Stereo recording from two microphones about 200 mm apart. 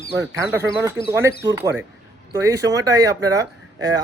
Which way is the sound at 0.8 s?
15° right (ahead or behind).